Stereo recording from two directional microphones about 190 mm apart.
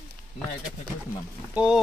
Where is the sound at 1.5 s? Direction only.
5° right (ahead or behind).